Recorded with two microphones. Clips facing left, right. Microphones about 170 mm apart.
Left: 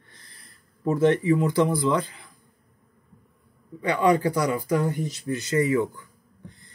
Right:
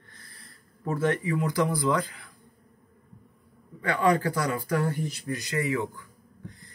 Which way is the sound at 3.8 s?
20° left (ahead or behind).